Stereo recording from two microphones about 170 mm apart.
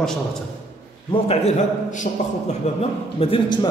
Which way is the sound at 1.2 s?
40° left (ahead or behind).